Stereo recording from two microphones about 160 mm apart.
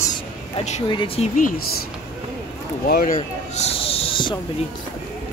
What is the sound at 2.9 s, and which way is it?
Speech, 65° left (ahead or behind).